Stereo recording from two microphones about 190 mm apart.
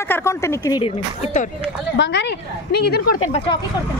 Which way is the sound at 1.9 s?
70° left (ahead or behind).